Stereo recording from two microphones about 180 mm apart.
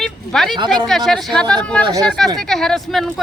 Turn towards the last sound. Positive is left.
turn(degrees=0)  # may be behind; listen again after turning